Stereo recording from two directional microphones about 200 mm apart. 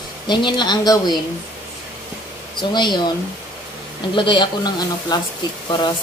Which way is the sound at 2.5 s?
20° left (ahead or behind).